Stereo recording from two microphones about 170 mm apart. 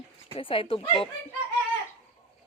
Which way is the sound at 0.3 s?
30° left (ahead or behind).